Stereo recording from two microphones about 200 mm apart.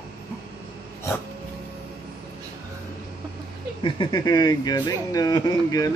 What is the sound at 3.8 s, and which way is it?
Speech, 25° left (ahead or behind).